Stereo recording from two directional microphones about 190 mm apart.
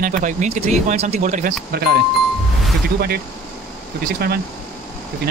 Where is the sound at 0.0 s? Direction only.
45° right (ahead or behind).